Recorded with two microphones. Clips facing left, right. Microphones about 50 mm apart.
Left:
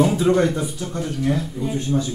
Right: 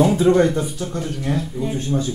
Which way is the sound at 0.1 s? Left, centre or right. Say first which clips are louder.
Right 3 dB; right.